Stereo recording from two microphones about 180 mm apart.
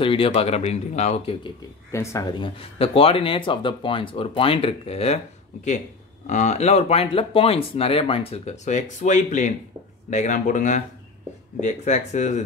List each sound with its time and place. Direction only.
0.0 s speech: 30° left (ahead or behind)
1.9 s speech: 15° left (ahead or behind)
2.4 s speech: 30° left (ahead or behind)
6.2 s speech: 40° left (ahead or behind)